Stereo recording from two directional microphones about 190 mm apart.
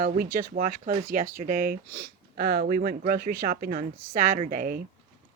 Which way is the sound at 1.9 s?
55° right (ahead or behind).